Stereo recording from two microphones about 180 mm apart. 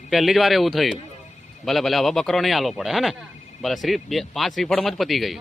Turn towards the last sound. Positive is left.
turn(degrees=0)  # may be behind; listen again after turning